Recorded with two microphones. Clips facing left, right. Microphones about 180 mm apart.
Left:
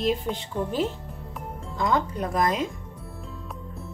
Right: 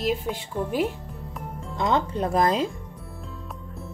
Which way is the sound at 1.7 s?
25° right (ahead or behind).